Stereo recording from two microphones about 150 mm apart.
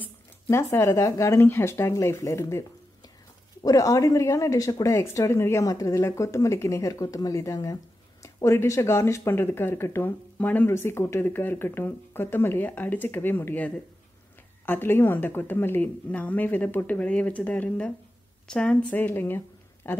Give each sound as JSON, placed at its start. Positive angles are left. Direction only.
{"t": 0.0, "sound": "speech", "side_deg": 15}
{"t": 3.6, "sound": "a woman's voice", "side_deg": 25}